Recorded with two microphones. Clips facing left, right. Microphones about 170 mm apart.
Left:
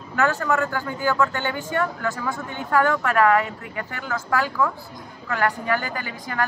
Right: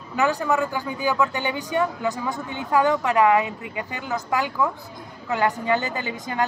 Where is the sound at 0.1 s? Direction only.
15° right (ahead or behind).